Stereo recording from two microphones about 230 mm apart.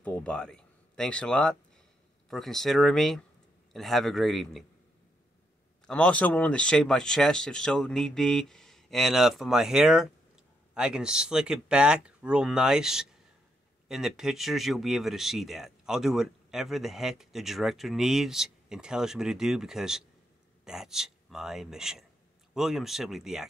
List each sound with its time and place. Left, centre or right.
0.0 s speech: centre
5.9 s speech: centre